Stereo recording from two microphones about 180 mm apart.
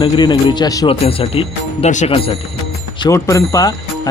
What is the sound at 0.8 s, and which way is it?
Speech, 30° left (ahead or behind).